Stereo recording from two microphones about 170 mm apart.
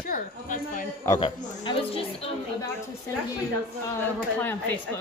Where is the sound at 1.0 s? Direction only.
25° left (ahead or behind).